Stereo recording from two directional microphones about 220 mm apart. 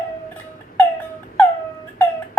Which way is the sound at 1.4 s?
10° left (ahead or behind).